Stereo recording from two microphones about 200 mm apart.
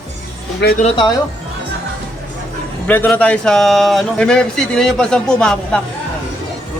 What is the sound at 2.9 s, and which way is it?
A man's voice, 5° left (ahead or behind).